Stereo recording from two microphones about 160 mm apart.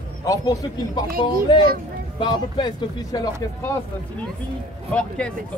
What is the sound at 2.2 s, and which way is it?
Speech, 30° left (ahead or behind).